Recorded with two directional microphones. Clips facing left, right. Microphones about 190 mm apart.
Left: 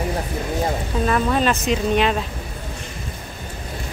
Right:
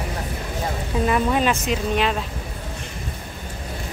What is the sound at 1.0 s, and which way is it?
Speech, 10° right (ahead or behind).